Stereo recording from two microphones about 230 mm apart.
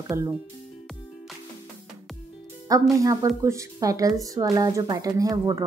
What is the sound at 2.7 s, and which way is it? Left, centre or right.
A woman's voice, centre.